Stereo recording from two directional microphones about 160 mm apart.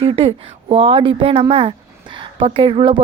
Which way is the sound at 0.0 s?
30° right (ahead or behind).